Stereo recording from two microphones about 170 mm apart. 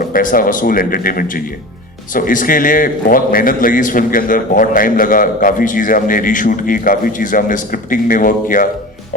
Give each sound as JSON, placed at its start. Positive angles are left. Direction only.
{"t": 0.0, "sound": "a man's voice", "side_deg": 55}